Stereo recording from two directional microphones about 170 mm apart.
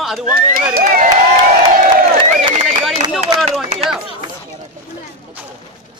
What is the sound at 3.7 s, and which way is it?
Speech, 40° right (ahead or behind).